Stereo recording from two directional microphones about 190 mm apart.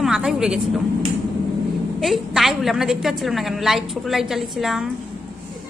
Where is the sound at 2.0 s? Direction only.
Centre (ahead or behind).